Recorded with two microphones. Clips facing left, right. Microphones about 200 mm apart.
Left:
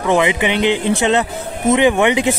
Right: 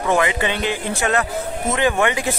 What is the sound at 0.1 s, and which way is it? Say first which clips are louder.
Speech: left 4 dB; 20° left (ahead or behind).